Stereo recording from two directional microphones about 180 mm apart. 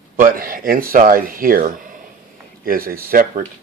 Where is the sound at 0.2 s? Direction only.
50° right (ahead or behind).